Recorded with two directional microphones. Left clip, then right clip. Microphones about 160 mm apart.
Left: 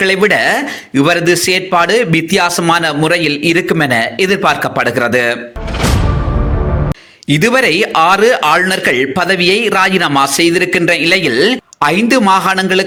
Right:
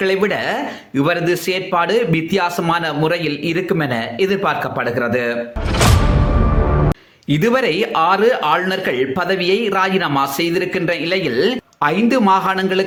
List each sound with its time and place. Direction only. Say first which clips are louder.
0.0 s a man's voice: left 7 dB; 25° left (ahead or behind)
7.3 s a man's voice: left 5 dB; 25° left (ahead or behind)